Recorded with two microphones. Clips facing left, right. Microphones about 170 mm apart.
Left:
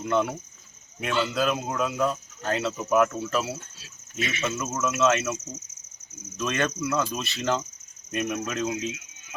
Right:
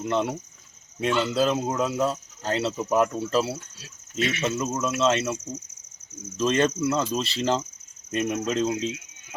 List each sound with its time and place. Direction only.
0.0 s speech: 25° right (ahead or behind)
4.6 s speech: 30° right (ahead or behind)